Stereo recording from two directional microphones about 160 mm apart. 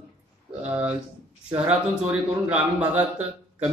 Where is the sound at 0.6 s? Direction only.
10° right (ahead or behind).